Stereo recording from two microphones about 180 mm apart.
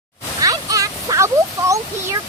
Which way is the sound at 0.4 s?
20° right (ahead or behind).